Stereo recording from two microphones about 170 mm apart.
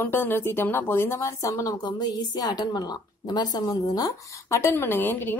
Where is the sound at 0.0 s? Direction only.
10° left (ahead or behind).